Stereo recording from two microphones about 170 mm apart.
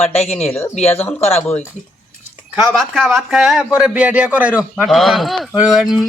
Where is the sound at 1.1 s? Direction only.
40° left (ahead or behind).